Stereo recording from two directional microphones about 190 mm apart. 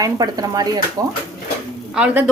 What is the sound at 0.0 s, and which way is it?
Speech, 20° right (ahead or behind).